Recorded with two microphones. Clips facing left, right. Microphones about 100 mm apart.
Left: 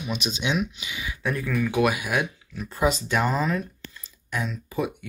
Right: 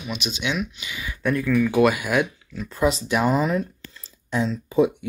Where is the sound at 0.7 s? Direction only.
10° left (ahead or behind).